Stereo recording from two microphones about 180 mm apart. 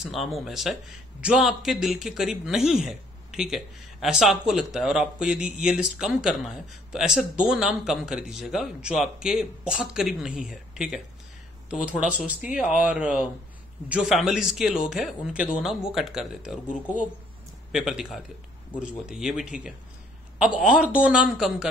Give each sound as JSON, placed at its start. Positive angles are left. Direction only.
{"t": 0.0, "sound": "a man's voice", "side_deg": 0}
{"t": 17.7, "sound": "a man's voice", "side_deg": 0}